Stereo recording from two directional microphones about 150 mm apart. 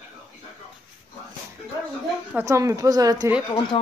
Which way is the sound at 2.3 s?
15° right (ahead or behind).